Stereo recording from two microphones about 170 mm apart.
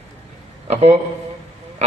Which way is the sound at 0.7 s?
40° right (ahead or behind).